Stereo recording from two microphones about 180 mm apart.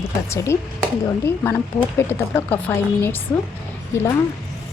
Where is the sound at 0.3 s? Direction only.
15° left (ahead or behind).